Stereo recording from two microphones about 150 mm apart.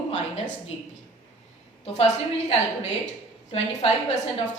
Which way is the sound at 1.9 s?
45° left (ahead or behind).